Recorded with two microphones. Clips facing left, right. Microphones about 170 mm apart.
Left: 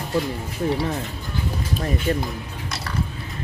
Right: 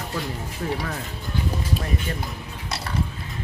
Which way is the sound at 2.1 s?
35° left (ahead or behind).